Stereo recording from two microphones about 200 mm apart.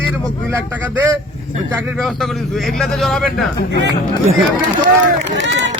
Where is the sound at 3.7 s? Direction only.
60° right (ahead or behind).